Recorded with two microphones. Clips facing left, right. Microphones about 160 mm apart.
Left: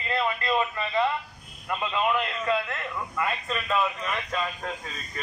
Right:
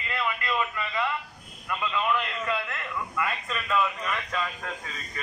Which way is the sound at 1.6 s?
25° left (ahead or behind).